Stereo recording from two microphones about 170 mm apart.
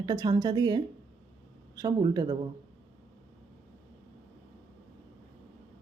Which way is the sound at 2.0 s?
20° right (ahead or behind).